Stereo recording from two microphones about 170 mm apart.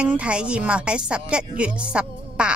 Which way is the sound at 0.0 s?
5° right (ahead or behind).